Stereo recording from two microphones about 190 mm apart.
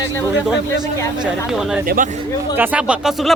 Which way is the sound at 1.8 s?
45° right (ahead or behind).